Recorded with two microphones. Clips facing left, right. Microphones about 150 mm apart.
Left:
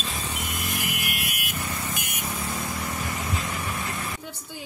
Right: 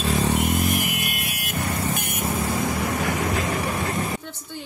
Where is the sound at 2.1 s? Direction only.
60° right (ahead or behind).